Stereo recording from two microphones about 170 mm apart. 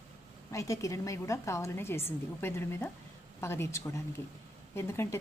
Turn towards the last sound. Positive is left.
turn(degrees=15)  # may be behind; listen again after turning